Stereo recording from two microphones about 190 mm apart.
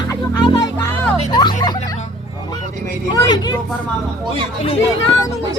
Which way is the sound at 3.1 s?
20° left (ahead or behind).